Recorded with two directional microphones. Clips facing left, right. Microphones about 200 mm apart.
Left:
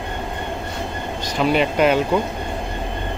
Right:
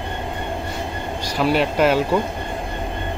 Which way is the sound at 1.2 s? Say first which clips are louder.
Left 1 dB; 5° right (ahead or behind).